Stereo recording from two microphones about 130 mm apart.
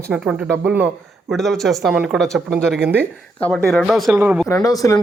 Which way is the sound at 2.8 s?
15° right (ahead or behind).